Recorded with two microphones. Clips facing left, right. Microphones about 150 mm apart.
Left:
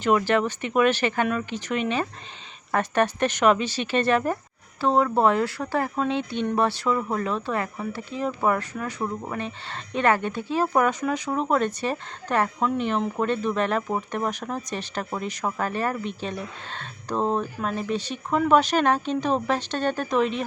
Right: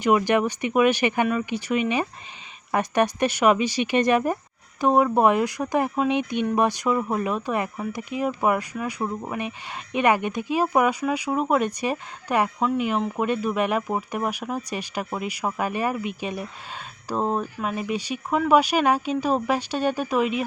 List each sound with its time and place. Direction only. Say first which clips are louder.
0.0 s speech: right 1 dB; 15° right (ahead or behind)